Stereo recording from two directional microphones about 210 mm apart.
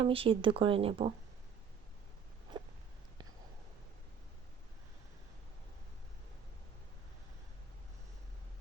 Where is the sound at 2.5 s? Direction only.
20° right (ahead or behind).